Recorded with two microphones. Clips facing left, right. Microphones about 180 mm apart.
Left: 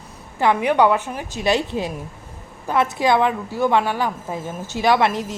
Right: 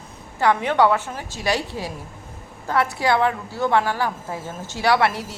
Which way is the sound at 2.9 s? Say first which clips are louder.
Left 3 dB; 15° left (ahead or behind).